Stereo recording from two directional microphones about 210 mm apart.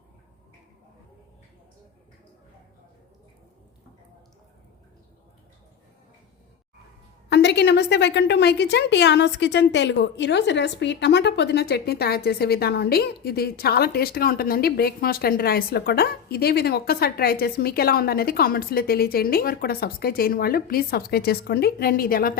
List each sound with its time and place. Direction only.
7.3 s a woman's voice: 55° left (ahead or behind)